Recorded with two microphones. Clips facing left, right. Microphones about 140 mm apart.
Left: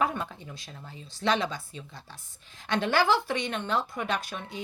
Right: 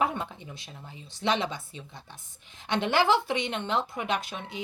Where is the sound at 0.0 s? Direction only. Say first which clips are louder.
Even; 20° right (ahead or behind).